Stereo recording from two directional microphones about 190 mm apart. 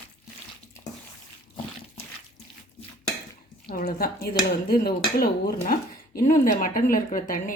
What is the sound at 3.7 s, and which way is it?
Speech, 50° left (ahead or behind).